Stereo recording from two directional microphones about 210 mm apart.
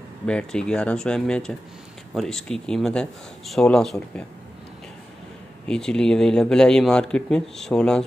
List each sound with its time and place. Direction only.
0.3 s speech: 5° left (ahead or behind)
5.7 s speech: 5° left (ahead or behind)